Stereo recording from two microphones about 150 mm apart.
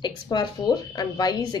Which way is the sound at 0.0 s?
30° left (ahead or behind).